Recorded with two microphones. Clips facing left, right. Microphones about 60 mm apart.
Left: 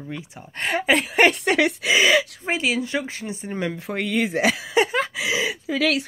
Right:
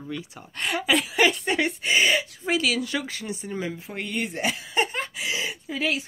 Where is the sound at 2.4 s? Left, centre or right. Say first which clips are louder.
Left 1 dB; left.